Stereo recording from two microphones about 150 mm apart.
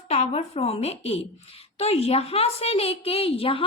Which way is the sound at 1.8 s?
45° left (ahead or behind).